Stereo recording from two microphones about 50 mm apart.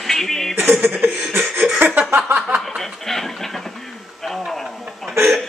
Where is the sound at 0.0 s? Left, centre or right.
Centre.